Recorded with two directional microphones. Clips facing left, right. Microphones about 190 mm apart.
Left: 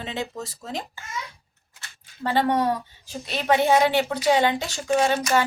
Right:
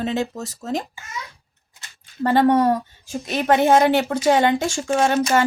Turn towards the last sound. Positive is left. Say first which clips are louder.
# right 2 dB
turn(degrees=-50)  # may be behind; listen again after turning